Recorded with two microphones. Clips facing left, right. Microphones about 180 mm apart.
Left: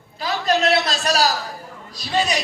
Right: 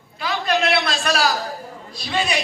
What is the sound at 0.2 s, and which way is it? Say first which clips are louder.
A man's voice: left 1 dB; 40° left (ahead or behind).